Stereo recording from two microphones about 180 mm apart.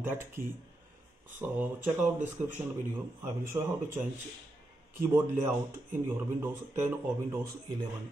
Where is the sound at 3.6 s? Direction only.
20° right (ahead or behind).